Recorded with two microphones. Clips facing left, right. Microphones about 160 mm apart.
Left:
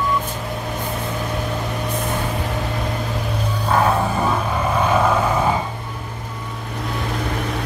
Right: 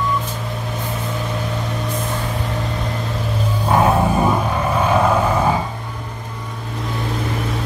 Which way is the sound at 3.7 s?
20° right (ahead or behind).